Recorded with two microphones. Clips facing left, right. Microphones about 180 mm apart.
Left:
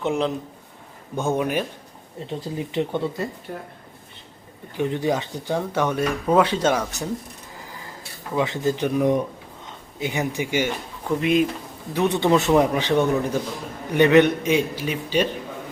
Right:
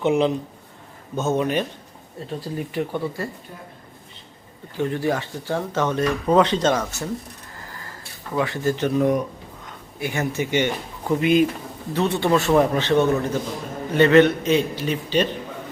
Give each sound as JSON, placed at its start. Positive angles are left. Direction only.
{"t": 0.0, "sound": "a man's voice", "side_deg": 0}
{"t": 1.1, "sound": "speech", "side_deg": 10}
{"t": 2.3, "sound": "speech", "side_deg": 20}
{"t": 3.5, "sound": "a man's voice", "side_deg": 55}
{"t": 4.8, "sound": "speech", "side_deg": 20}
{"t": 8.4, "sound": "speech", "side_deg": 20}
{"t": 11.2, "sound": "a man's voice", "side_deg": 0}
{"t": 11.9, "sound": "speech", "side_deg": 15}